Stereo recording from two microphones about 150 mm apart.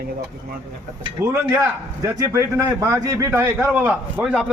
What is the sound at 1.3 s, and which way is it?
A man's voice, 15° right (ahead or behind).